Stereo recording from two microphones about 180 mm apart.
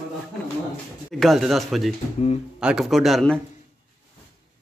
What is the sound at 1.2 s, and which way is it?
Speech, centre (ahead or behind).